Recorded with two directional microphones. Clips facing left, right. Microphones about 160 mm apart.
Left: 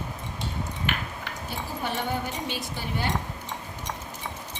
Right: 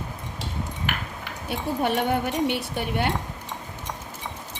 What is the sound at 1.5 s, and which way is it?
Speech, 65° right (ahead or behind).